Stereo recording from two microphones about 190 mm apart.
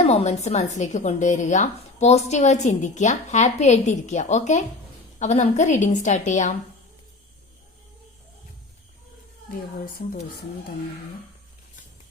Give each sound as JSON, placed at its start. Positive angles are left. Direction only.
{"t": 0.0, "sound": "speech", "side_deg": 35}
{"t": 9.8, "sound": "speech", "side_deg": 45}